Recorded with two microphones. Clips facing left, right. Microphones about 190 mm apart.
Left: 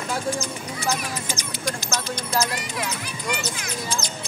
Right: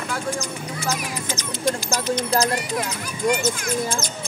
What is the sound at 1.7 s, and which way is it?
Speech, 25° right (ahead or behind).